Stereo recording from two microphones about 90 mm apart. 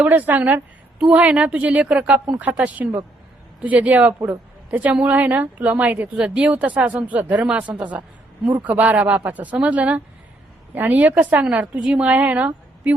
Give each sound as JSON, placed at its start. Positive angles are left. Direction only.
{"t": 0.0, "sound": "a woman's voice", "side_deg": -20}